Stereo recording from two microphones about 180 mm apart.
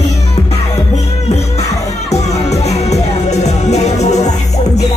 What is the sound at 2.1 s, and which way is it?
Music, 35° left (ahead or behind).